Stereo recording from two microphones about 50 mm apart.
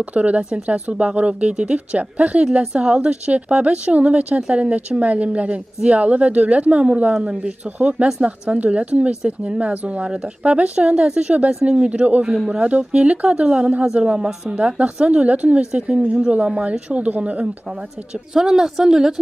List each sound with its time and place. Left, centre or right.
0.0 s a woman's voice: right
18.3 s a woman's voice: centre